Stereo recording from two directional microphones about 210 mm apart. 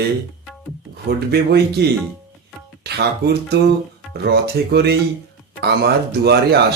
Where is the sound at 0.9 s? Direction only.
50° right (ahead or behind).